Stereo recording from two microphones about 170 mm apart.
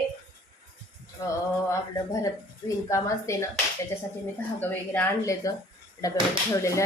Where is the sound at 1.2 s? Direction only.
20° left (ahead or behind).